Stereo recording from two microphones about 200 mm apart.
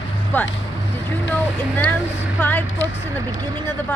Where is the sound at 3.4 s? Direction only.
20° right (ahead or behind).